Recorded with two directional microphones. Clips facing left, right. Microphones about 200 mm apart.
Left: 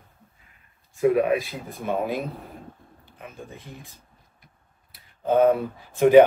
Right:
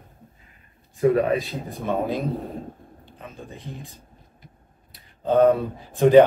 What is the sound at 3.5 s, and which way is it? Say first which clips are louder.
Speech: right 4 dB; 15° right (ahead or behind).